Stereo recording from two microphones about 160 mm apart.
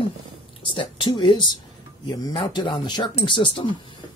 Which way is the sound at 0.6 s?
30° left (ahead or behind).